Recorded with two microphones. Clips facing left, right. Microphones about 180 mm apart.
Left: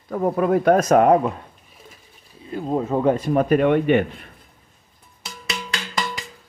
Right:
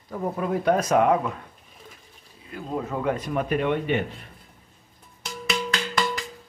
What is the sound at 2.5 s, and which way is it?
Speech, 30° left (ahead or behind).